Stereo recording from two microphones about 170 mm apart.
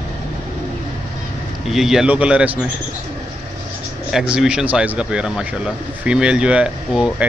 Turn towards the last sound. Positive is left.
turn(degrees=-5)  # may be behind; listen again after turning